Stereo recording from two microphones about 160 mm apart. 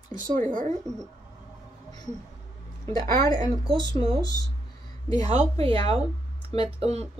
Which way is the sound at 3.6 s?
35° right (ahead or behind).